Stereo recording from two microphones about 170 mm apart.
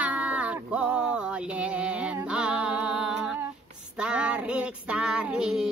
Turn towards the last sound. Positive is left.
turn(degrees=-5)  # may be behind; listen again after turning